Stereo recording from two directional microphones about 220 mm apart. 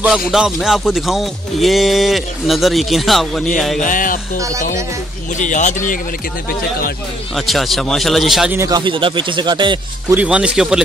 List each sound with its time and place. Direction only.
0.0 s speech: centre (ahead or behind)
3.8 s speech: 40° left (ahead or behind)
5.4 s speech: 35° left (ahead or behind)
7.3 s speech: centre (ahead or behind)
8.5 s speech: 15° right (ahead or behind)
10.1 s speech: 5° right (ahead or behind)